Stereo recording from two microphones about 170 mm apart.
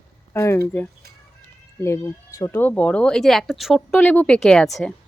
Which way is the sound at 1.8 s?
15° left (ahead or behind).